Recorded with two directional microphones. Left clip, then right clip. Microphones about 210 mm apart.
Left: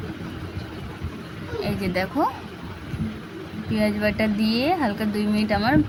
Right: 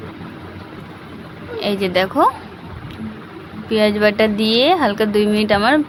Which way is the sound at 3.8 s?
10° right (ahead or behind).